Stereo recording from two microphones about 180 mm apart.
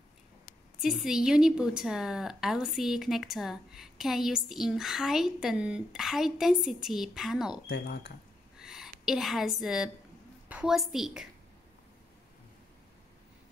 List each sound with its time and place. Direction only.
0.7 s a woman's voice: centre (ahead or behind)
7.7 s speech: 70° left (ahead or behind)
8.5 s a sound: 5° right (ahead or behind)
10.5 s a woman's voice: 5° right (ahead or behind)